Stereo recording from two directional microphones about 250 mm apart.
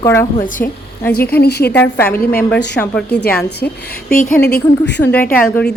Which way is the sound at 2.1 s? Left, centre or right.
Left.